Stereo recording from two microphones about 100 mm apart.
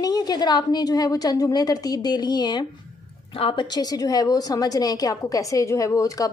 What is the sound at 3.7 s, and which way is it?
A woman's voice, 40° left (ahead or behind).